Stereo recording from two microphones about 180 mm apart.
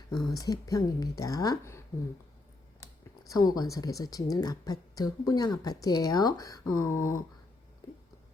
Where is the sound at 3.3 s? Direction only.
20° left (ahead or behind).